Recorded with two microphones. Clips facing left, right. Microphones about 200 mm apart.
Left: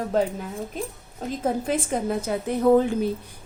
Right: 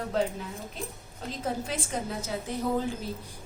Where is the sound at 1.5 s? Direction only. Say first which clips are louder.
Left 8 dB; 50° left (ahead or behind).